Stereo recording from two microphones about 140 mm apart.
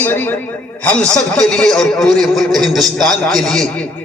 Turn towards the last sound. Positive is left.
turn(degrees=5)  # may be behind; listen again after turning